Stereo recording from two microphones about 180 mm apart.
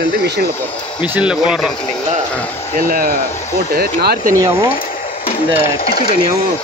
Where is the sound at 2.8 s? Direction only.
55° right (ahead or behind).